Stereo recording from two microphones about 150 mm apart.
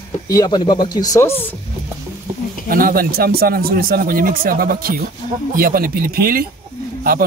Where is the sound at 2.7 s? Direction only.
75° right (ahead or behind).